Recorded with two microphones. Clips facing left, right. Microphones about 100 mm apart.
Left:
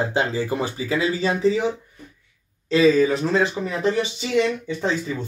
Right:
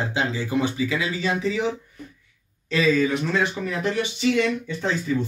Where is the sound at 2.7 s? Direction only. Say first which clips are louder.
Left 4 dB; 35° left (ahead or behind).